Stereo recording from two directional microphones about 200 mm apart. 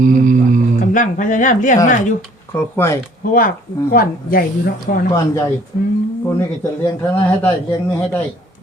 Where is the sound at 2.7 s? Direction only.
15° left (ahead or behind).